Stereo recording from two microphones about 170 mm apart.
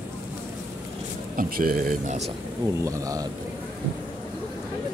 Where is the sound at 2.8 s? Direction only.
20° right (ahead or behind).